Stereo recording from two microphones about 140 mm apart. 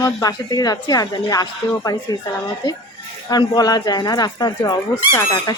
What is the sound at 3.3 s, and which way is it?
A woman's voice, 30° left (ahead or behind).